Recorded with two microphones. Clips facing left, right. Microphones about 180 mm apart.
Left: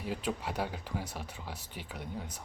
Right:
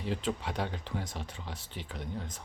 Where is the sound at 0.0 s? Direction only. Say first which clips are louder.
Right 2 dB; 10° left (ahead or behind).